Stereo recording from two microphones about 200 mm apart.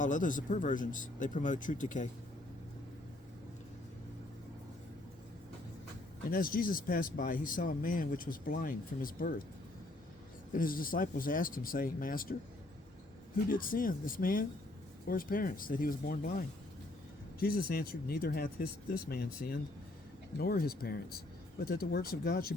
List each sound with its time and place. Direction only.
0.0 s speech: 40° left (ahead or behind)
6.3 s speech: 45° left (ahead or behind)
10.5 s speech: 45° left (ahead or behind)
13.5 s speech: 45° left (ahead or behind)
17.4 s speech: 45° left (ahead or behind)